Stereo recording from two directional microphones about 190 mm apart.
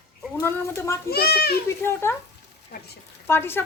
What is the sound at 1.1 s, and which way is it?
Speech, 55° left (ahead or behind).